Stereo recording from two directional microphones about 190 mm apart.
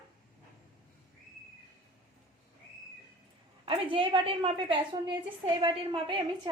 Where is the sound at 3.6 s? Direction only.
30° right (ahead or behind).